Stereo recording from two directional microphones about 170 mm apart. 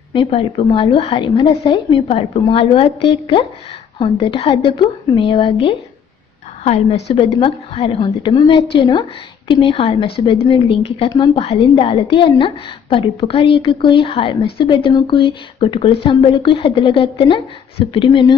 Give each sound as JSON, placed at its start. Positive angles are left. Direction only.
{"t": 0.1, "sound": "a woman's voice", "side_deg": 35}